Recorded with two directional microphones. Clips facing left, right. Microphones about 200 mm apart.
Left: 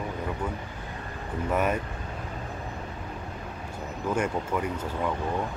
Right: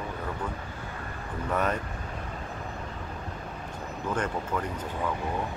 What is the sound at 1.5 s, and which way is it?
Speech, 10° left (ahead or behind).